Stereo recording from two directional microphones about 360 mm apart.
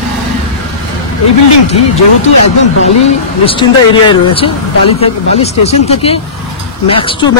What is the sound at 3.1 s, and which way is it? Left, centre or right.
Speech, centre.